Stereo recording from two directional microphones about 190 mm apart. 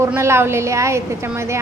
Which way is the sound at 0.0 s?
15° right (ahead or behind).